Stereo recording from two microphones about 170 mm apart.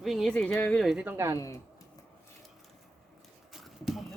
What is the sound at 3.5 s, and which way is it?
Clip-clop, centre (ahead or behind).